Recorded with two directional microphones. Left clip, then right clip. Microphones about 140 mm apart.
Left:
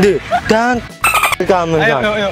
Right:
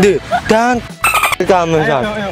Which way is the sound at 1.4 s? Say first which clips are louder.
Right 2 dB; 10° right (ahead or behind).